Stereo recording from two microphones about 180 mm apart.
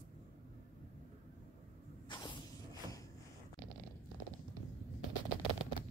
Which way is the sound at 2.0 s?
25° left (ahead or behind).